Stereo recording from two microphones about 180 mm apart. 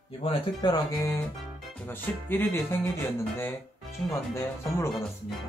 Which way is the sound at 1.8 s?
10° left (ahead or behind).